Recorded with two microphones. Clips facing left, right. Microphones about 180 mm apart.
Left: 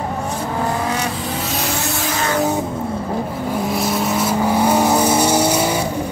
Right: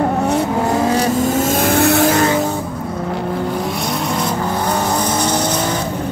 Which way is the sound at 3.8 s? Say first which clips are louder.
Left 1 dB; 5° left (ahead or behind).